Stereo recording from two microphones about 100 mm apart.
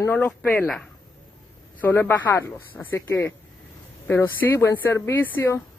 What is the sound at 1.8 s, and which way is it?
Speech, 25° left (ahead or behind).